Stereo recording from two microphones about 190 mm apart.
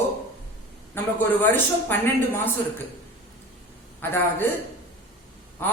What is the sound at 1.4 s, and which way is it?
A man's voice, 10° left (ahead or behind).